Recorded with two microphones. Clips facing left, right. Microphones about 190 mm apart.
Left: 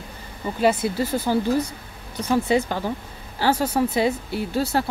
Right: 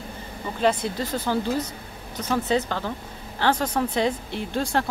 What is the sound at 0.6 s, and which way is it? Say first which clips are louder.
A woman's voice: left 3 dB; 5° left (ahead or behind).